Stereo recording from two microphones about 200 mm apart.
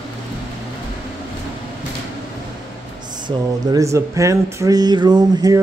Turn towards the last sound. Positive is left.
turn(degrees=-20)  # may be behind; listen again after turning